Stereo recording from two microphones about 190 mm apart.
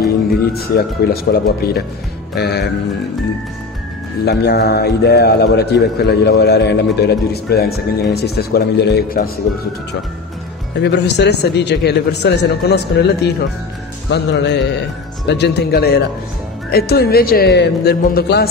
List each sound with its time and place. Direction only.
0.5 s a man's voice: 55° left (ahead or behind)
4.2 s a man's voice: 60° left (ahead or behind)
10.8 s a man's voice: 65° left (ahead or behind)